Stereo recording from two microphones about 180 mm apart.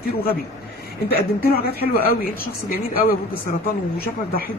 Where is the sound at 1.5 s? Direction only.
55° left (ahead or behind).